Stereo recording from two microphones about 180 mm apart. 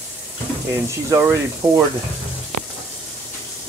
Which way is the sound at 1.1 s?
10° right (ahead or behind).